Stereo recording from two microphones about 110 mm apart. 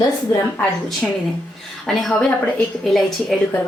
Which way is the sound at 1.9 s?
Centre (ahead or behind).